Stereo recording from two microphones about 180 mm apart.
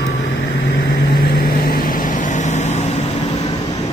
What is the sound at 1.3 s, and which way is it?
Vehicle, 60° left (ahead or behind).